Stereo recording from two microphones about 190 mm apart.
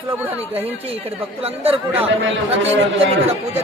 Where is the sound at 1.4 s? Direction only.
30° right (ahead or behind).